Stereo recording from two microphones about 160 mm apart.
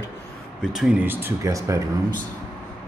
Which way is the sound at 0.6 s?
5° right (ahead or behind).